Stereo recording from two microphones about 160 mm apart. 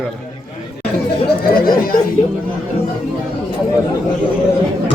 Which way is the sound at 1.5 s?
70° left (ahead or behind).